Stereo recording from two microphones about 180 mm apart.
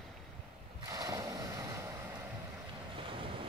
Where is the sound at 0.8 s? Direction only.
20° right (ahead or behind).